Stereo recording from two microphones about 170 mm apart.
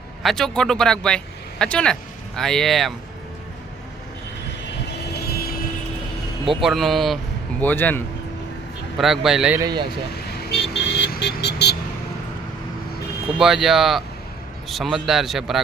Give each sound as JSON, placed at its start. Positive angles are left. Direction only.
{"t": 0.2, "sound": "speech", "side_deg": 0}
{"t": 5.0, "sound": "vehicle", "side_deg": 70}
{"t": 6.5, "sound": "speech", "side_deg": 0}
{"t": 9.0, "sound": "speech", "side_deg": 0}
{"t": 9.6, "sound": "speech", "side_deg": -20}
{"t": 10.1, "sound": "vehicle", "side_deg": 85}
{"t": 13.4, "sound": "speech", "side_deg": 0}